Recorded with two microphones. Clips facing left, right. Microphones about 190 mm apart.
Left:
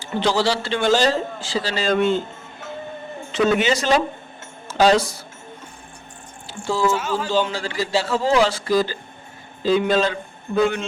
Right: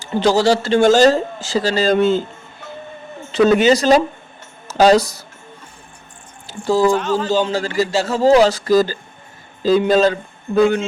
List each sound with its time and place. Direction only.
0.0 s speech: 45° right (ahead or behind)
3.3 s speech: 40° right (ahead or behind)
6.5 s a sound: 40° right (ahead or behind)
6.9 s speech: 5° left (ahead or behind)
7.5 s speech: 45° right (ahead or behind)